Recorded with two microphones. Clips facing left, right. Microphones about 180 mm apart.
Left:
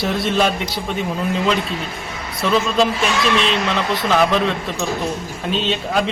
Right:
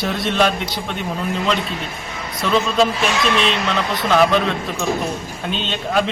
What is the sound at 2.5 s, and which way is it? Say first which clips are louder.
Speech: even; centre (ahead or behind).